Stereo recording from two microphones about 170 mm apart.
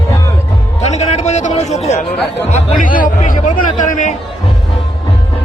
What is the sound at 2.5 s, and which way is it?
Speech, 50° left (ahead or behind).